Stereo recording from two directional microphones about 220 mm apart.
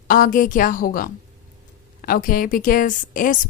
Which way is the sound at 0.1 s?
40° left (ahead or behind).